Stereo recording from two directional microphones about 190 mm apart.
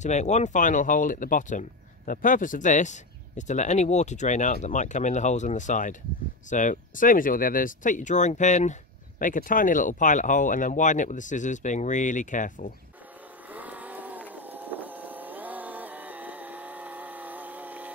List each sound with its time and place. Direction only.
0.0 s speech: 40° left (ahead or behind)
13.5 s vehicle: 10° right (ahead or behind)